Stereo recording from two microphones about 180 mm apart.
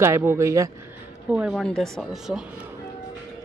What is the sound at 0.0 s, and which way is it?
Speech, 15° right (ahead or behind).